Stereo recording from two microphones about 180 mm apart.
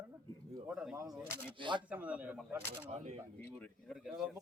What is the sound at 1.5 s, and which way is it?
Speech, 25° right (ahead or behind).